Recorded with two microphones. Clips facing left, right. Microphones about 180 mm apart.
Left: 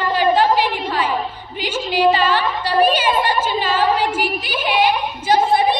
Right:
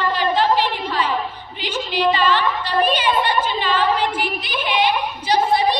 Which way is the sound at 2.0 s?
45° left (ahead or behind).